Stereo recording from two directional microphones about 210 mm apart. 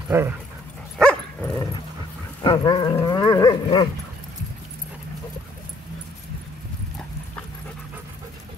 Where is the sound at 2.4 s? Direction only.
20° left (ahead or behind).